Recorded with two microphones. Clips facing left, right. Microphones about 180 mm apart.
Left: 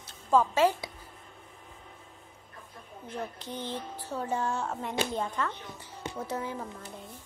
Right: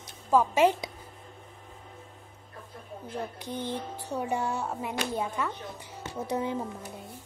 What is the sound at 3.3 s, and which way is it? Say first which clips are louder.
A woman's voice: right 3 dB; 10° right (ahead or behind).